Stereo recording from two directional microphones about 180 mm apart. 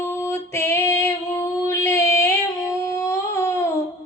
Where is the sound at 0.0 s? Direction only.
15° left (ahead or behind).